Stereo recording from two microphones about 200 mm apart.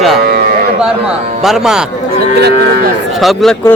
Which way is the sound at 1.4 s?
5° right (ahead or behind).